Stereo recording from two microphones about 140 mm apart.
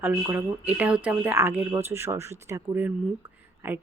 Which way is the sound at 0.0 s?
15° right (ahead or behind).